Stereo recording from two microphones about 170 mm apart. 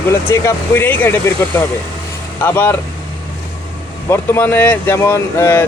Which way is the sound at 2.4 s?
10° left (ahead or behind).